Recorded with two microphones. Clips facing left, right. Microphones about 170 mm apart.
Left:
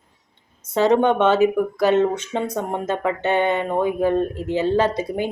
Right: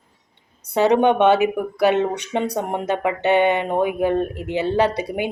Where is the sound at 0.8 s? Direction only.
15° right (ahead or behind).